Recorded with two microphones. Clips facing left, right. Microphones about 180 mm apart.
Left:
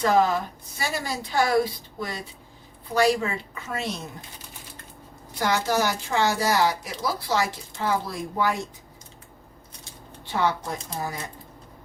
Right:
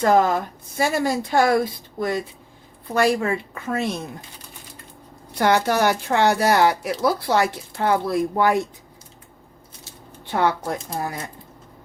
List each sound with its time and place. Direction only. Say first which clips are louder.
0.0 s speech: right 3 dB; 50° right (ahead or behind)
5.4 s speech: right 5 dB; 60° right (ahead or behind)
10.2 s speech: right 4 dB; 55° right (ahead or behind)